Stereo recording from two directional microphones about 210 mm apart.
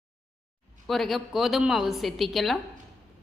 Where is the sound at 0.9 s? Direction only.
Centre (ahead or behind).